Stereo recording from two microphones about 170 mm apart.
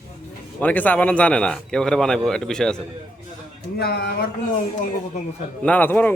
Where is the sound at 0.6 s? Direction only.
10° left (ahead or behind).